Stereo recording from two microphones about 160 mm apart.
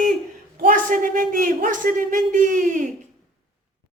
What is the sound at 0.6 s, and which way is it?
A man's voice, 55° right (ahead or behind).